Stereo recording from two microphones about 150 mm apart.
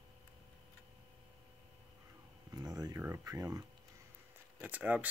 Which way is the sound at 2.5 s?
25° right (ahead or behind).